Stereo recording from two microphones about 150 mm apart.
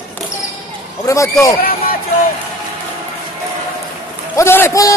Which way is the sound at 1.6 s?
80° left.